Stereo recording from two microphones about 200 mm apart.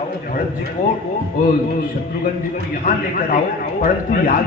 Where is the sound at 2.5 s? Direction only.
45° left (ahead or behind).